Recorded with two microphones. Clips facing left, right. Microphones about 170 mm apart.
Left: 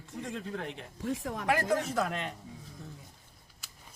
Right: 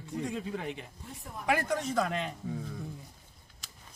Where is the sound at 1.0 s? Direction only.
90° left.